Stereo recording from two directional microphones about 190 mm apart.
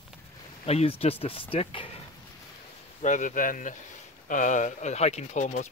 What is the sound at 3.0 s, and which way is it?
Speech, 40° left (ahead or behind).